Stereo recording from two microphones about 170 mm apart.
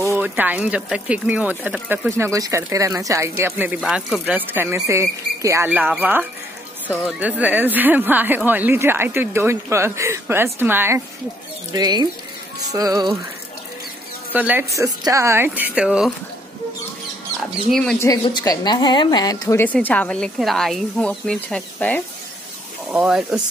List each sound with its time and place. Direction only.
0.0 s speech: 15° right (ahead or behind)
11.7 s music: 25° right (ahead or behind)
14.3 s speech: 10° right (ahead or behind)
17.6 s speech: centre (ahead or behind)
17.9 s a woman's voice: 20° left (ahead or behind)
19.6 s speech: 10° left (ahead or behind)
22.8 s speech: 5° right (ahead or behind)